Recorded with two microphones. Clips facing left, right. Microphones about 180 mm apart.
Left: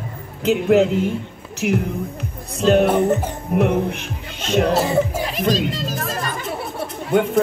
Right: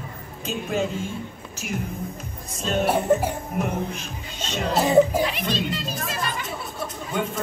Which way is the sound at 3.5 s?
65° left (ahead or behind).